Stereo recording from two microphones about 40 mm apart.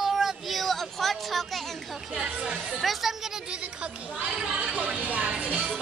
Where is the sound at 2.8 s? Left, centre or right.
Centre.